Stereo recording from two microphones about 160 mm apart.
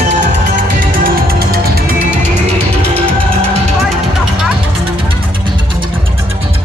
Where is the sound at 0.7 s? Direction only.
60° right (ahead or behind).